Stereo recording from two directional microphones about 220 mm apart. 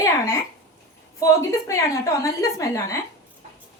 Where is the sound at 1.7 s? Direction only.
15° left (ahead or behind).